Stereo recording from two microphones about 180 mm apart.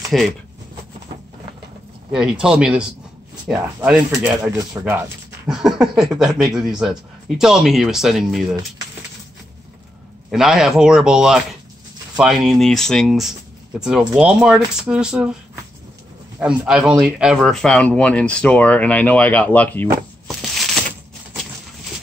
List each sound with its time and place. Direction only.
0.1 s speech: centre (ahead or behind)
2.0 s speech: 5° right (ahead or behind)
4.1 s speech: 20° right (ahead or behind)
5.5 s speech: centre (ahead or behind)
10.3 s speech: centre (ahead or behind)
16.3 s speech: 5° right (ahead or behind)
20.5 s a sound: centre (ahead or behind)